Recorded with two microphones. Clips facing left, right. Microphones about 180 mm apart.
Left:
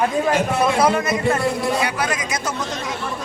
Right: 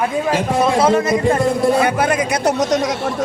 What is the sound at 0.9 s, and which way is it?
Speech, 30° right (ahead or behind).